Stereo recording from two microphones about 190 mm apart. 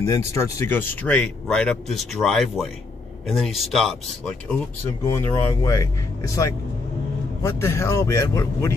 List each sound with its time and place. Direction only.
0.3 s speech: 15° left (ahead or behind)
5.1 s speech: 15° left (ahead or behind)